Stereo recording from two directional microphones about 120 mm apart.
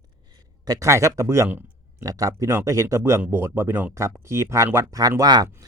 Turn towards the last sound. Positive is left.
turn(degrees=-30)  # may be behind; listen again after turning